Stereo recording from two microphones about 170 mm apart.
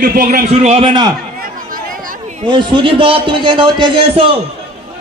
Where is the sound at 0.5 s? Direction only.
40° right (ahead or behind).